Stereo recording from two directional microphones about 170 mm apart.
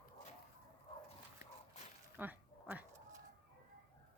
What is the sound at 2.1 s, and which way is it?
Dog, 10° right (ahead or behind).